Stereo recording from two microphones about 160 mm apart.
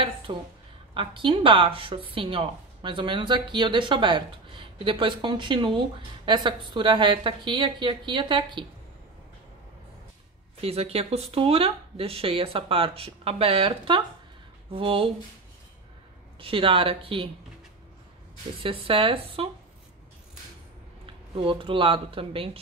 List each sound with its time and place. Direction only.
0.3 s a woman's voice: 30° right (ahead or behind)
10.6 s a woman's voice: 40° right (ahead or behind)
16.3 s a woman's voice: 35° right (ahead or behind)
18.6 s a woman's voice: 35° right (ahead or behind)
21.0 s speech: 35° right (ahead or behind)